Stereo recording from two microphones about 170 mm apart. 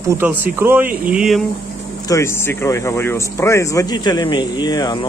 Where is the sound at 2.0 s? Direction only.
15° left (ahead or behind).